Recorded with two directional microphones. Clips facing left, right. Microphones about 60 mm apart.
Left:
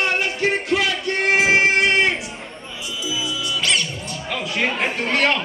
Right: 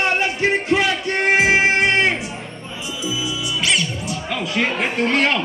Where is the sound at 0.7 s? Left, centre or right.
Right.